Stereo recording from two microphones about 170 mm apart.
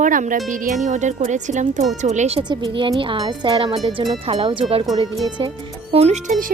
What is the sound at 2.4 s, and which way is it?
Speech, 25° right (ahead or behind).